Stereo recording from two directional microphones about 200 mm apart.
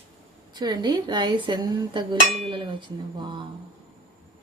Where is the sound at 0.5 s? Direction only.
20° right (ahead or behind).